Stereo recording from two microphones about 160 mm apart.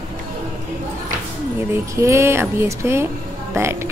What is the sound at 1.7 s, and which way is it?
A man's voice, 15° right (ahead or behind).